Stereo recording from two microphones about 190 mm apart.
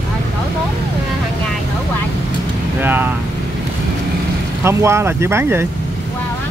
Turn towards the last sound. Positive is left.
turn(degrees=-15)  # may be behind; listen again after turning